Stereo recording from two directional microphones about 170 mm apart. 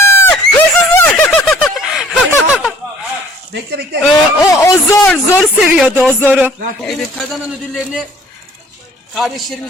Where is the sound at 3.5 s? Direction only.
75° right (ahead or behind).